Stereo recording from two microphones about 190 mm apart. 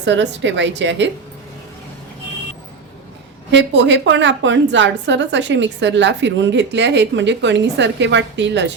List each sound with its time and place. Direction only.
0.0 s a woman's voice: 65° right (ahead or behind)
3.5 s a woman's voice: 70° right (ahead or behind)